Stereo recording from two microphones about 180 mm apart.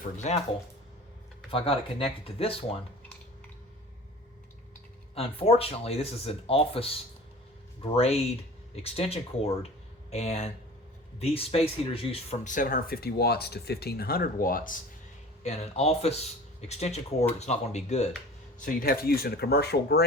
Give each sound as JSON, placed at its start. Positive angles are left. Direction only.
{"t": 0.0, "sound": "speech", "side_deg": 40}
{"t": 1.5, "sound": "speech", "side_deg": 30}
{"t": 5.1, "sound": "speech", "side_deg": 30}
{"t": 15.4, "sound": "speech", "side_deg": 35}
{"t": 18.6, "sound": "speech", "side_deg": 55}